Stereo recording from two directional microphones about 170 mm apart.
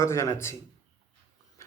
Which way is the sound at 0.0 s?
15° left (ahead or behind).